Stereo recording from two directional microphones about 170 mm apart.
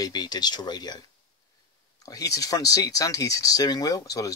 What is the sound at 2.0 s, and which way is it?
Speech, 20° left (ahead or behind).